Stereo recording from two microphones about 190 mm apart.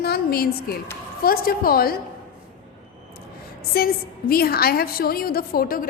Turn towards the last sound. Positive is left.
turn(degrees=50)  # may be behind; listen again after turning